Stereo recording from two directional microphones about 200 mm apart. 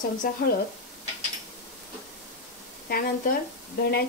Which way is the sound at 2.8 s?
50° left (ahead or behind).